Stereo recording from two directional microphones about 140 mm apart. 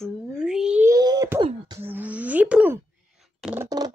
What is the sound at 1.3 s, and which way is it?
Beatboxing, 35° right (ahead or behind).